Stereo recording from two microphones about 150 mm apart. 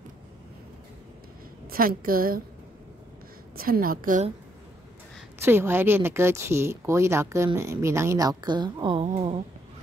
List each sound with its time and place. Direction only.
1.7 s a woman's voice: 75° right (ahead or behind)
3.5 s a woman's voice: 75° right (ahead or behind)
5.4 s speech: 15° right (ahead or behind); by 9.4 s 40° right (ahead or behind)